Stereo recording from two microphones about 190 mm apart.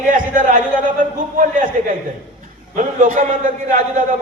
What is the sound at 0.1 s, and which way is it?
A man's voice, 45° right (ahead or behind).